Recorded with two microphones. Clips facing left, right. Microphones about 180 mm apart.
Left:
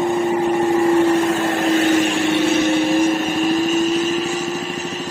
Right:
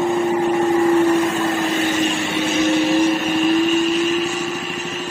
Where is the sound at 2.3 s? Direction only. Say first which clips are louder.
Left 2 dB; 55° left (ahead or behind).